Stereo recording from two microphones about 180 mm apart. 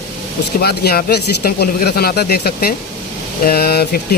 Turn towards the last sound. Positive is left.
turn(degrees=60)  # may be behind; listen again after turning